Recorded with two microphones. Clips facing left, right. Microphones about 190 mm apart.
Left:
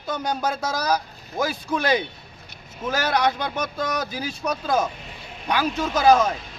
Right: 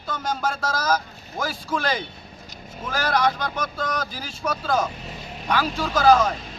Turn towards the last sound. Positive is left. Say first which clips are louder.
# even
turn(degrees=15)  # may be behind; listen again after turning